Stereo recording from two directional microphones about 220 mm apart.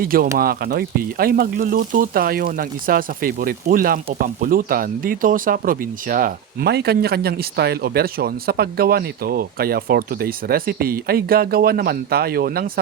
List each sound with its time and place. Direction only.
0.0 s speech: 40° right (ahead or behind)